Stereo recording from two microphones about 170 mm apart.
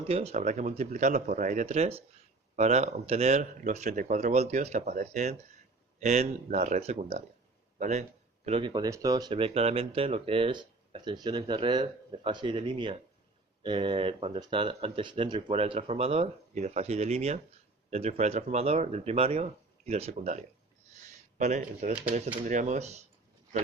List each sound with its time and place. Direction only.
0.1 s a man's voice: 35° right (ahead or behind)
8.4 s speech: 30° right (ahead or behind)
20.9 s a sound: 45° right (ahead or behind)
22.4 s speech: 45° right (ahead or behind)